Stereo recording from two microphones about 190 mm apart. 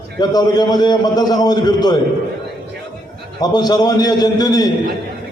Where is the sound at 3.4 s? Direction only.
20° left (ahead or behind).